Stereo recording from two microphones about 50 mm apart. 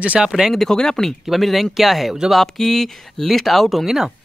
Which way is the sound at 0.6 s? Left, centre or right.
Centre.